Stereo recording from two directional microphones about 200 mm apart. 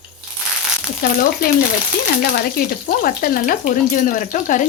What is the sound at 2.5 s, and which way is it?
Speech, 45° left (ahead or behind).